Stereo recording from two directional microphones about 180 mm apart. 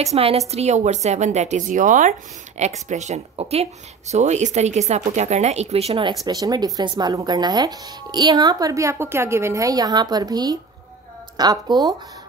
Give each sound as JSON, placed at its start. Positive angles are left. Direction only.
{"t": 0.0, "sound": "speech", "side_deg": -35}